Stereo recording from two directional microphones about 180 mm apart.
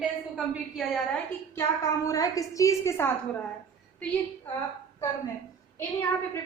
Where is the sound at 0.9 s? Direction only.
10° left (ahead or behind).